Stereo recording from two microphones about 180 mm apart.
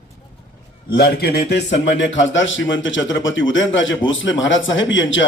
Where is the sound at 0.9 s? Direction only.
60° left (ahead or behind).